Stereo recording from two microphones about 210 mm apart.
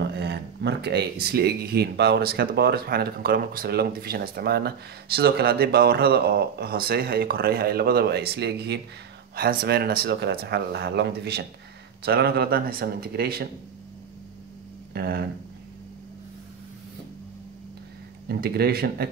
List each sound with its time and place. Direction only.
0.0 s speech: 50° right (ahead or behind)
15.0 s speech: 50° right (ahead or behind)
18.3 s speech: 50° right (ahead or behind)